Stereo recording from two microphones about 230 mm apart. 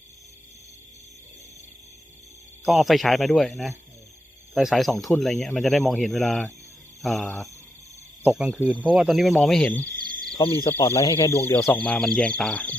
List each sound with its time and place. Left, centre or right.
2.6 s speech: centre
4.5 s speech: centre
10.0 s a sound: right
10.6 s speech: centre